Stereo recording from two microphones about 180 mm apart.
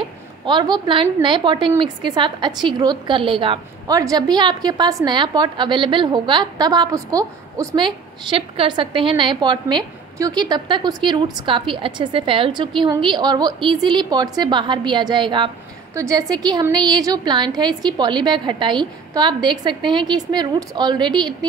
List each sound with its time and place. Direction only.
0.5 s a woman's voice: 25° right (ahead or behind)